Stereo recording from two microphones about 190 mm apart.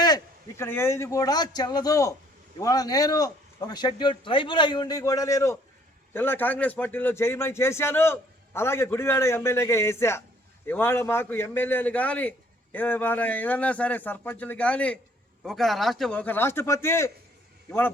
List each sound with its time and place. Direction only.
0.0 s a man's voice: 15° left (ahead or behind)